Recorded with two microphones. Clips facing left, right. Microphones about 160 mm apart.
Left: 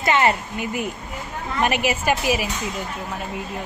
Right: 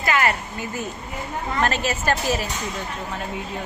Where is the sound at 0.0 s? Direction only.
25° left (ahead or behind).